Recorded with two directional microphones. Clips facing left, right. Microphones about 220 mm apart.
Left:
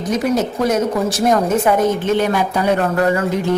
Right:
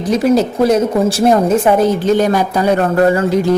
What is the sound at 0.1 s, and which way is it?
A woman's voice, 30° right (ahead or behind).